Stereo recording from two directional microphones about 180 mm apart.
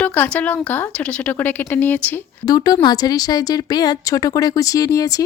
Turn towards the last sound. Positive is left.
turn(degrees=20)  # may be behind; listen again after turning